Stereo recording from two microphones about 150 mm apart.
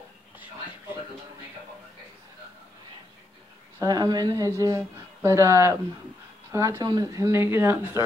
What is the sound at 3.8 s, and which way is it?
A woman's voice, 25° right (ahead or behind).